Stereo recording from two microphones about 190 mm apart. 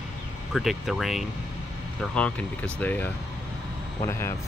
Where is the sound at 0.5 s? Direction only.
Centre (ahead or behind).